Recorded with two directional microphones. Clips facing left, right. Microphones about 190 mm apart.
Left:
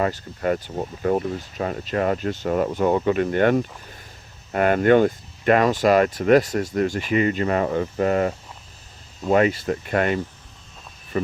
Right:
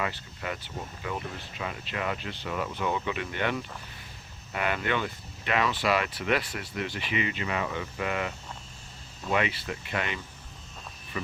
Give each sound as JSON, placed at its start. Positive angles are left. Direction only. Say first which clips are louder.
{"t": 0.0, "sound": "speech", "louder": "left 10 dB", "side_deg": 45}